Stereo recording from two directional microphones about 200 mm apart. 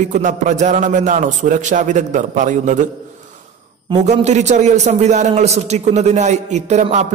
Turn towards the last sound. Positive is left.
turn(degrees=-35)  # may be behind; listen again after turning